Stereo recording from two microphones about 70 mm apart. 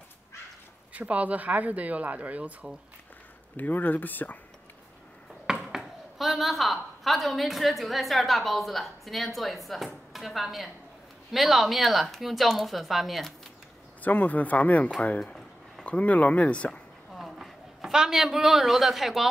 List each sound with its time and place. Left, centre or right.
0.9 s speech: right
3.5 s speech: left
5.5 s speech: centre
14.0 s speech: left
17.1 s a man's voice: centre